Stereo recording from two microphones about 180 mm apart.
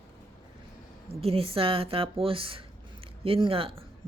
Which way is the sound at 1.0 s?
30° right (ahead or behind).